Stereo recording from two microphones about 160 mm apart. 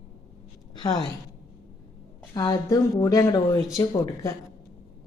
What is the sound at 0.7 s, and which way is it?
Speech, 30° left (ahead or behind).